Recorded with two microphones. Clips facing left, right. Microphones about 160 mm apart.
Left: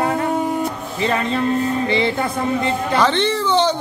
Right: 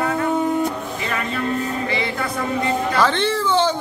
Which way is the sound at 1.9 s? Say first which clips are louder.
Left 5 dB; 30° left (ahead or behind).